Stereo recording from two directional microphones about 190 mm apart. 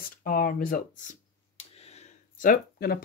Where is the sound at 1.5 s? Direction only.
35° left (ahead or behind); by 3.0 s 50° left (ahead or behind).